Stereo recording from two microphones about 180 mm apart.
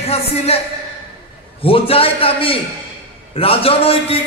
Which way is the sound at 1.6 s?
30° left (ahead or behind).